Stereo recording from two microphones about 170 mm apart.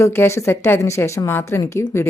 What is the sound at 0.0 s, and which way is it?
A woman's voice, 15° left (ahead or behind).